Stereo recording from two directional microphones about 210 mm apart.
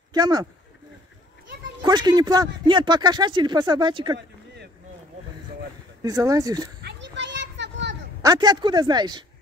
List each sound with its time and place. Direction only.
0.1 s speech: 20° right (ahead or behind)
1.8 s speech: 20° right (ahead or behind)
6.0 s speech: 15° right (ahead or behind)
6.8 s children playing: 55° right (ahead or behind)
8.2 s speech: 20° right (ahead or behind)